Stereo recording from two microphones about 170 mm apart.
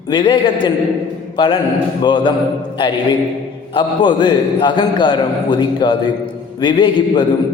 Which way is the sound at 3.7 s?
25° left (ahead or behind).